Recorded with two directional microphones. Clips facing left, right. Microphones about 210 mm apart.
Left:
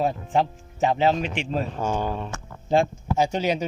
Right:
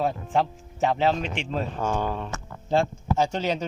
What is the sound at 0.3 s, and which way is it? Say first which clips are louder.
Speech: left 2 dB; centre (ahead or behind).